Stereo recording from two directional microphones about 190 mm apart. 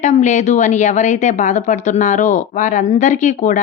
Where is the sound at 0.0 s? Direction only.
40° left (ahead or behind).